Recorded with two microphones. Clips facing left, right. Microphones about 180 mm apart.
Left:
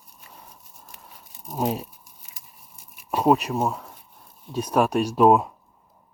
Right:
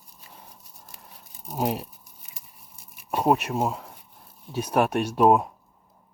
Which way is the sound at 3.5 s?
20° right (ahead or behind).